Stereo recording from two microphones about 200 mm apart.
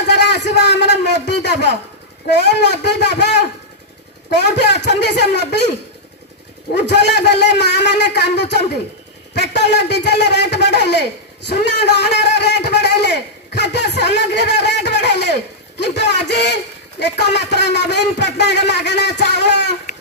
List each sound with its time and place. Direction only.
0.0 s a man's voice: 60° left (ahead or behind)
4.5 s a man's voice: 60° left (ahead or behind)
6.9 s a man's voice: 60° left (ahead or behind)